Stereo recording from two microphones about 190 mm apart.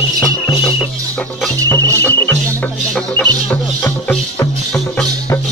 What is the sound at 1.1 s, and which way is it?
Music, 5° left (ahead or behind).